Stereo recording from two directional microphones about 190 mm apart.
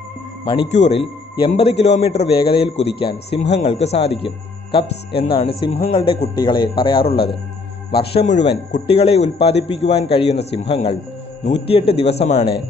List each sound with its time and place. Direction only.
0.5 s a man's voice: 30° left (ahead or behind)